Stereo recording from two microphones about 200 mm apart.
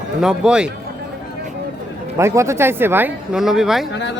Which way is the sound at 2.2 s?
15° right (ahead or behind).